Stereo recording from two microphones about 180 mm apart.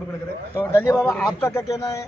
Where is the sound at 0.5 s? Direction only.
10° left (ahead or behind).